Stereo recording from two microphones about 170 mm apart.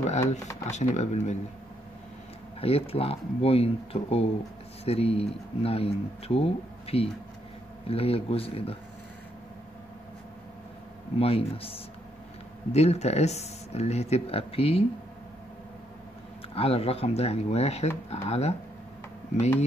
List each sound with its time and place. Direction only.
0.7 s speech: 45° left (ahead or behind)
2.6 s speech: 35° left (ahead or behind)
11.1 s speech: 35° left (ahead or behind)
16.5 s speech: 35° left (ahead or behind)